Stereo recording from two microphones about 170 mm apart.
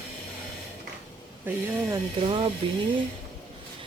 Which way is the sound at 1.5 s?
10° right (ahead or behind).